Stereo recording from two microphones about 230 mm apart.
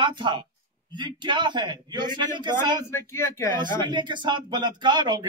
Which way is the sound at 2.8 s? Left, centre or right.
Centre.